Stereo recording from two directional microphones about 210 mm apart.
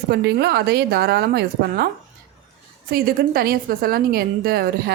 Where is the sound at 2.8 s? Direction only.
45° right (ahead or behind).